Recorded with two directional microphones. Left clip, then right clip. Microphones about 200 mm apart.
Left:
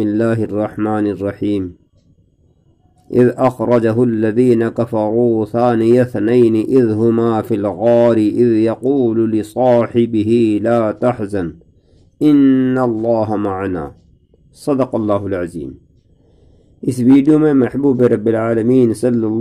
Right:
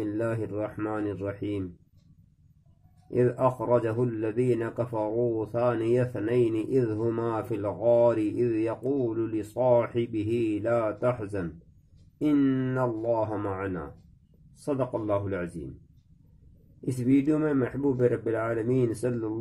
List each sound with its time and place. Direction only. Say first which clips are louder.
0.0 s a man's voice: left 14 dB; 45° left (ahead or behind)
3.1 s a man's voice: left 12 dB; 45° left (ahead or behind)
16.8 s speech: left 14 dB; 40° left (ahead or behind)